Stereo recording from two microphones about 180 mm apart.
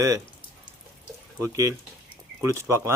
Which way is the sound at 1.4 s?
20° right (ahead or behind).